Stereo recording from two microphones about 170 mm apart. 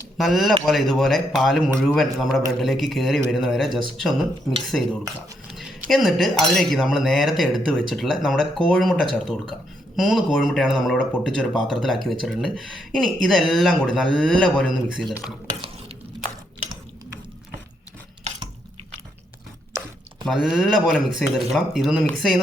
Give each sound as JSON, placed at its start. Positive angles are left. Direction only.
{"t": 0.2, "sound": "speech", "side_deg": 0}
{"t": 20.2, "sound": "speech", "side_deg": 0}